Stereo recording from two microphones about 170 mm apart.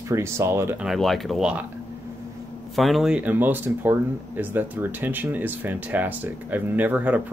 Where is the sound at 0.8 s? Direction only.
Centre (ahead or behind).